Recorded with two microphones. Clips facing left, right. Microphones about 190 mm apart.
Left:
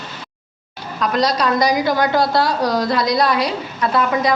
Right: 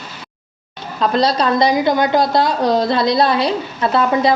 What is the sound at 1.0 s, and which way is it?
A woman's voice, 30° right (ahead or behind).